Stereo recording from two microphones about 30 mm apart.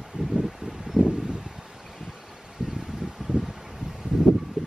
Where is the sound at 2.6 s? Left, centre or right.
Right.